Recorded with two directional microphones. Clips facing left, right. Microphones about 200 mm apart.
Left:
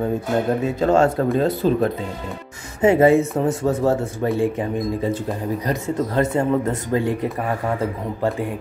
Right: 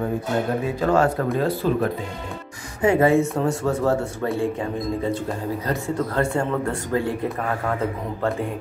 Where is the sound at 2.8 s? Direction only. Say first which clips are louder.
Left 3 dB; 25° left (ahead or behind).